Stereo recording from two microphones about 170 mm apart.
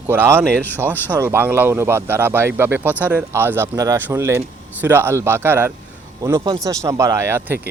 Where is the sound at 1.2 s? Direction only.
15° right (ahead or behind).